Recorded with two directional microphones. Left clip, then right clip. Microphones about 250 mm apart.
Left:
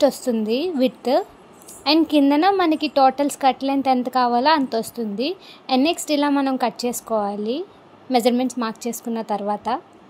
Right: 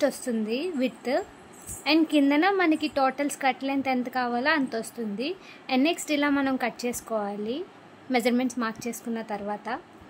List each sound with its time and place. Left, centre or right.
0.0 s a woman's voice: centre